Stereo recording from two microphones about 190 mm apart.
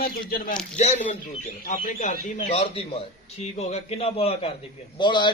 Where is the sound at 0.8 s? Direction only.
40° left (ahead or behind).